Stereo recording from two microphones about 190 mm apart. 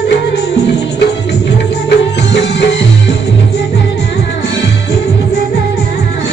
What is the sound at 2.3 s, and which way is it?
Music, 70° left (ahead or behind).